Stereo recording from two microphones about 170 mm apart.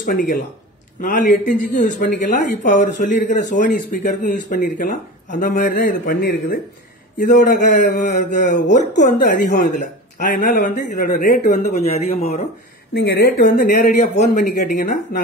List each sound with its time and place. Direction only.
0.0 s a man's voice: 50° left (ahead or behind)
12.9 s a man's voice: 65° left (ahead or behind); by 15.0 s 45° left (ahead or behind)